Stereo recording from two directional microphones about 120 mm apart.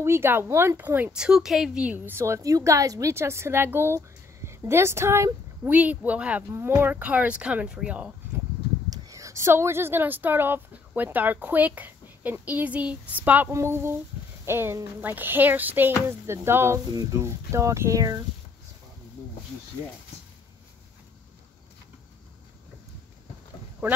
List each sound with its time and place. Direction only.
0.0 s a woman's voice: 20° right (ahead or behind)
8.9 s a woman's voice: 25° right (ahead or behind)
23.8 s speech: 20° right (ahead or behind)